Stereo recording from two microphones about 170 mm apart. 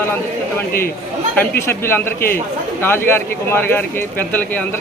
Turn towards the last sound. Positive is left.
turn(degrees=10)  # may be behind; listen again after turning